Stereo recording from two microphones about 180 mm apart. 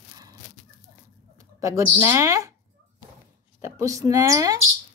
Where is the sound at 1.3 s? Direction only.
15° right (ahead or behind).